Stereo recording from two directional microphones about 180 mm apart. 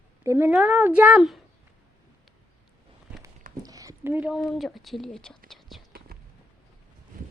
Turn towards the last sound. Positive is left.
turn(degrees=-55)  # may be behind; listen again after turning